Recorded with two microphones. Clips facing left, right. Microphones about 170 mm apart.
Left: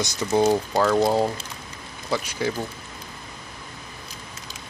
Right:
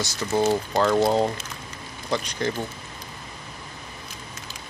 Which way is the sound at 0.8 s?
Centre (ahead or behind).